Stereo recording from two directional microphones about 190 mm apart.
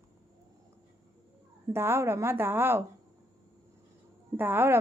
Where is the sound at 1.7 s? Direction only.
15° right (ahead or behind).